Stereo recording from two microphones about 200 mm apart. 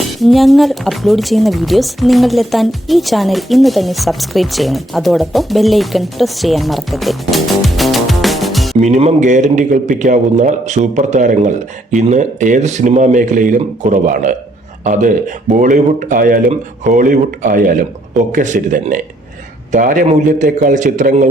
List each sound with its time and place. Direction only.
0.2 s speech: centre (ahead or behind)
8.8 s speech: 35° right (ahead or behind)